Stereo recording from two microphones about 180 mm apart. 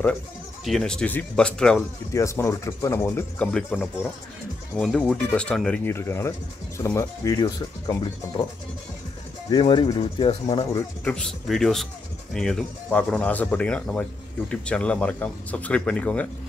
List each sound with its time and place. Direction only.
0.7 s speech: centre (ahead or behind)
2.1 s speech: 15° left (ahead or behind)
9.5 s speech: 25° left (ahead or behind)
11.1 s speech: 5° left (ahead or behind)